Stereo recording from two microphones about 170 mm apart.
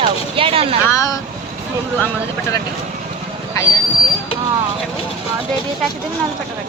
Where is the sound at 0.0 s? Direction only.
30° right (ahead or behind).